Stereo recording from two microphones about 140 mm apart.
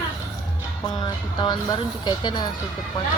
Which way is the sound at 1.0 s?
30° left (ahead or behind).